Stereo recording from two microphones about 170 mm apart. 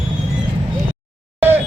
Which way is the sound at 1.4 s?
10° right (ahead or behind).